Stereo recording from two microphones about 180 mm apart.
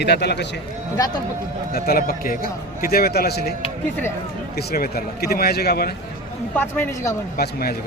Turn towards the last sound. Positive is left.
turn(degrees=60)  # may be behind; listen again after turning